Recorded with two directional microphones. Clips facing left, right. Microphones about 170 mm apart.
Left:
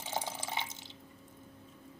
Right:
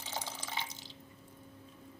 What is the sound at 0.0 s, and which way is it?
Drip, 50° left (ahead or behind).